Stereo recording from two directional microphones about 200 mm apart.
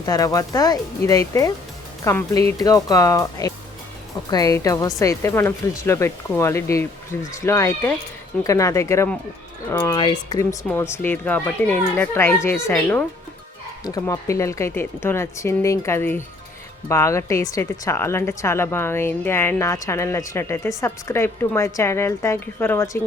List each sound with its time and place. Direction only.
0.0 s speech: 20° left (ahead or behind)